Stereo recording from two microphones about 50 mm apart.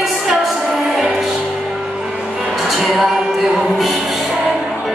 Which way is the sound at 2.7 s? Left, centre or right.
Centre.